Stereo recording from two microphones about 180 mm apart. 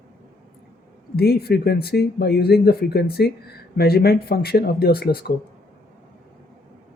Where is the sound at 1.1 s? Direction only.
60° left (ahead or behind).